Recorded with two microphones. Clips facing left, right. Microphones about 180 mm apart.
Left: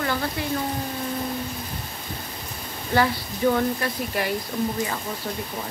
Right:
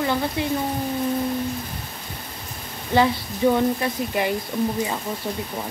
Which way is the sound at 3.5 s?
20° right (ahead or behind).